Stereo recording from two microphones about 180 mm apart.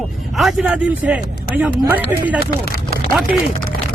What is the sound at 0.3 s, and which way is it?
A man's voice, centre (ahead or behind).